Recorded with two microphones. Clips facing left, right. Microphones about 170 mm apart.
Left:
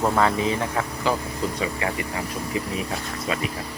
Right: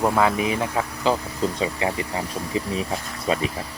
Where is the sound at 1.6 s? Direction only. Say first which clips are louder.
Right 2 dB; 25° right (ahead or behind).